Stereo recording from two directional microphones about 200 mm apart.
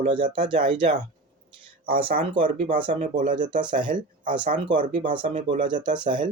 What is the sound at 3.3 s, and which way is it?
Speech, 25° right (ahead or behind).